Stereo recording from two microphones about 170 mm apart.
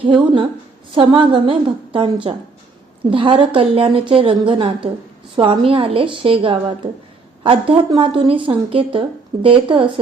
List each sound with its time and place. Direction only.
0.0 s a woman's voice: 30° right (ahead or behind)